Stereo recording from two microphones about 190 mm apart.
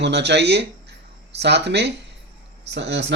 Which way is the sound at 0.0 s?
65° right (ahead or behind).